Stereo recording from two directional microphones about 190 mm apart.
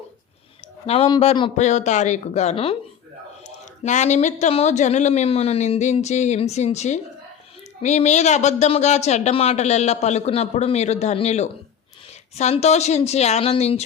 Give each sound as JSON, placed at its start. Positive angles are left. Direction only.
{"t": 0.9, "sound": "speech", "side_deg": 30}
{"t": 3.8, "sound": "speech", "side_deg": 40}